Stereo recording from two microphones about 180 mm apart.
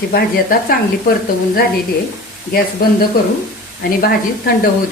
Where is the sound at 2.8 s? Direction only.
55° left (ahead or behind).